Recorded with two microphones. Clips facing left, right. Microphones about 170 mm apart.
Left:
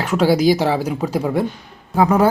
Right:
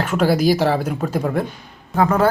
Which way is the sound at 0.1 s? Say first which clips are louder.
Left 3 dB; 10° left (ahead or behind).